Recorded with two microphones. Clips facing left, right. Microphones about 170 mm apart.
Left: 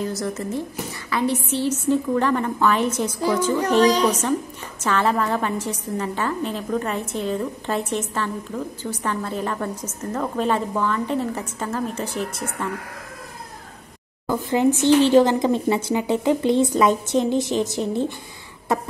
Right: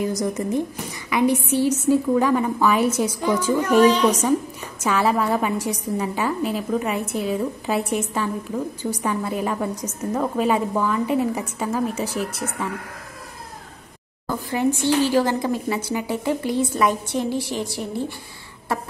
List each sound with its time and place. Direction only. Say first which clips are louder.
0.0 s a woman's voice: right 3 dB; 15° right (ahead or behind)
3.8 s a woman's voice: right 1 dB; 40° left (ahead or behind)
4.1 s a woman's voice: right 2 dB; 10° right (ahead or behind)
14.2 s a woman's voice: left 3 dB; 15° left (ahead or behind)